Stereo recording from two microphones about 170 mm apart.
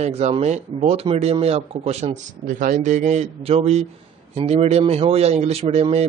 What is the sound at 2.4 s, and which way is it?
Speech, 50° right (ahead or behind).